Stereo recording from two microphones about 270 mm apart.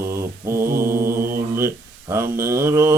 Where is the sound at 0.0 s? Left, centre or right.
Centre.